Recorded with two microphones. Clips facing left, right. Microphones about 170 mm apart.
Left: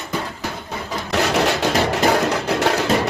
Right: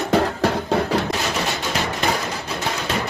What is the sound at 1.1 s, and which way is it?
Music, 70° left (ahead or behind).